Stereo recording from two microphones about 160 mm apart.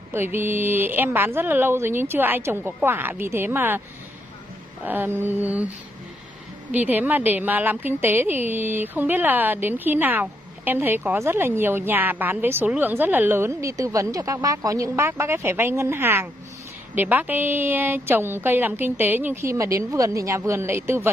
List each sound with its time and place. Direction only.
0.1 s a woman's voice: 15° right (ahead or behind)
4.8 s a woman's voice: 15° right (ahead or behind)
6.7 s a woman's voice: 10° right (ahead or behind)